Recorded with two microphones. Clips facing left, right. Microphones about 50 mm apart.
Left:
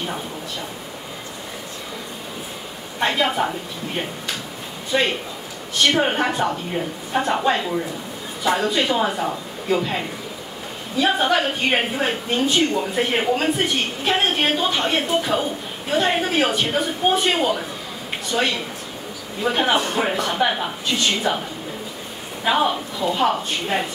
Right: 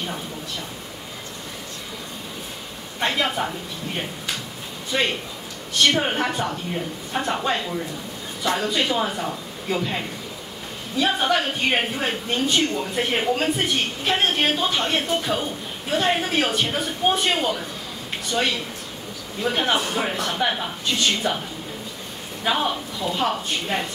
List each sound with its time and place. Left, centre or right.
3.0 s a woman's voice: centre
22.4 s a woman's voice: centre